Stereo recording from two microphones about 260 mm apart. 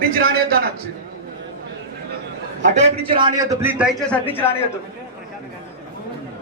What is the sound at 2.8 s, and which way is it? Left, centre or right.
Speech, centre.